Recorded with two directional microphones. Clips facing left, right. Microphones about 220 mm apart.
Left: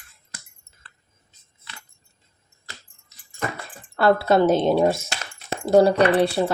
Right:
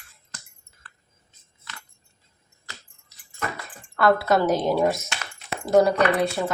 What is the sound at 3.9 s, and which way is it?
Speech, 30° left (ahead or behind).